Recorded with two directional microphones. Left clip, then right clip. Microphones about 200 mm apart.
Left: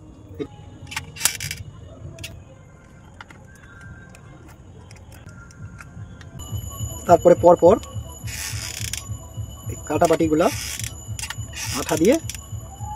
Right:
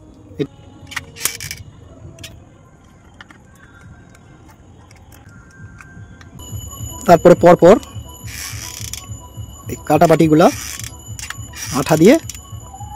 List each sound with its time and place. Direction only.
7.1 s speech: 50° right (ahead or behind)
9.7 s speech: 55° right (ahead or behind)
11.7 s speech: 60° right (ahead or behind)